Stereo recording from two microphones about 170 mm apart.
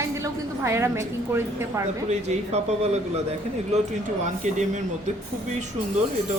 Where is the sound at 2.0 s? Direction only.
40° right (ahead or behind).